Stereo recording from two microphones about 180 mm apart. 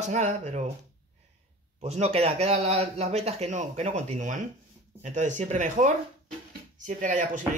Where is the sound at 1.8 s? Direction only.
35° right (ahead or behind).